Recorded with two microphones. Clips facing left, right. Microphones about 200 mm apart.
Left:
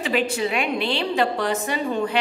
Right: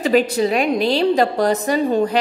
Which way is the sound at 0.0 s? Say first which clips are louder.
Right 7 dB; 40° right (ahead or behind).